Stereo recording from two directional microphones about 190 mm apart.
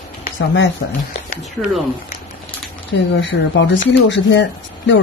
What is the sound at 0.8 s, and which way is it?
Speech, 75° left (ahead or behind).